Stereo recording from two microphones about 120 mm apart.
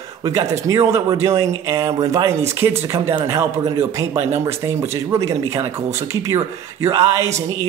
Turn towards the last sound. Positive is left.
turn(degrees=-25)  # may be behind; listen again after turning